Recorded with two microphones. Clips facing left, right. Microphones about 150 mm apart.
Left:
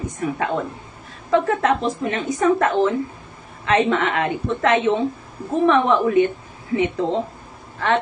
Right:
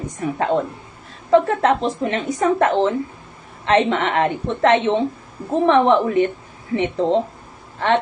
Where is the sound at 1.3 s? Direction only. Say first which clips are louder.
Right 3 dB; 30° right (ahead or behind).